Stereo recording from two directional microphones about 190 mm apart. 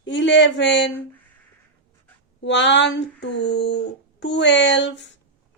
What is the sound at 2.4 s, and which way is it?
Speech, 70° left (ahead or behind).